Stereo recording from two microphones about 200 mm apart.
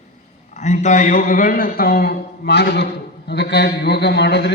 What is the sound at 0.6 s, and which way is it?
A man's voice, 35° left (ahead or behind).